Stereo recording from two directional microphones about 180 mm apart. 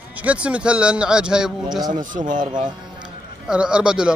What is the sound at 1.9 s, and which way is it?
Speech, 45° right (ahead or behind).